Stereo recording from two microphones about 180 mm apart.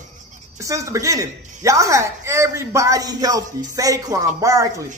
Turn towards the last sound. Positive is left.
turn(degrees=-15)  # may be behind; listen again after turning